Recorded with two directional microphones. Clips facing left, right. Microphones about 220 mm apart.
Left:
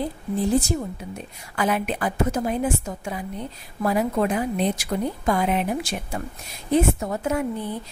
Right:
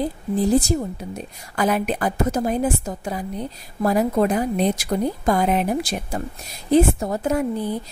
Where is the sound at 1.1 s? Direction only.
40° right (ahead or behind).